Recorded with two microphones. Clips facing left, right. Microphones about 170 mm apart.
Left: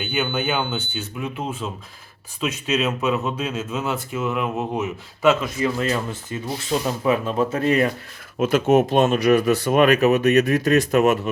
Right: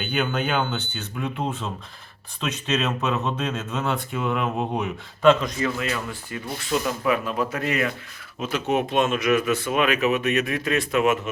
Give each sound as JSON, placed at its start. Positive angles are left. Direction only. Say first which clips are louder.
{"t": 0.0, "sound": "speech", "louder": "left 1 dB", "side_deg": 5}
{"t": 5.8, "sound": "speech", "louder": "left 5 dB", "side_deg": 25}
{"t": 8.4, "sound": "speech", "louder": "left 7 dB", "side_deg": 50}